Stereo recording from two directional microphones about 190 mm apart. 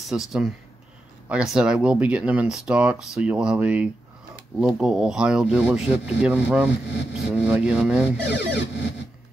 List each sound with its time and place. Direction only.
0.0 s speech: centre (ahead or behind)
8.3 s cacophony: 65° left (ahead or behind)